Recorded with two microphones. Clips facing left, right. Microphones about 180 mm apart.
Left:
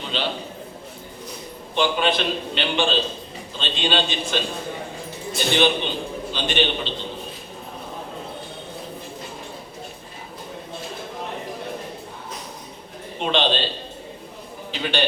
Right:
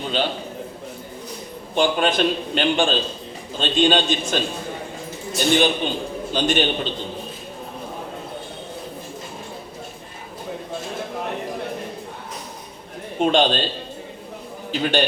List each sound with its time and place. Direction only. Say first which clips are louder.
0.1 s a man's voice: right 3 dB; 45° right (ahead or behind)
1.7 s a man's voice: right 2 dB; 45° right (ahead or behind)
5.5 s a man's voice: right 1 dB; 45° right (ahead or behind)
13.1 s a man's voice: right 4 dB; 45° right (ahead or behind)
14.7 s a man's voice: right 5 dB; 45° right (ahead or behind)